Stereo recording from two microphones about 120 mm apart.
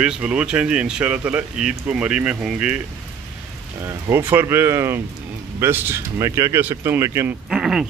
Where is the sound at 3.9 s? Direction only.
20° right (ahead or behind).